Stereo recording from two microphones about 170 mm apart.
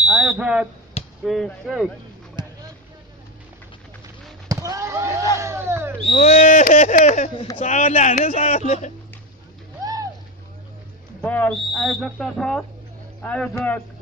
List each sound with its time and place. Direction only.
0.1 s speech: 5° right (ahead or behind)
4.5 s speech: 20° right (ahead or behind)
6.0 s owl: 50° left (ahead or behind)
11.1 s a man's voice: 10° left (ahead or behind)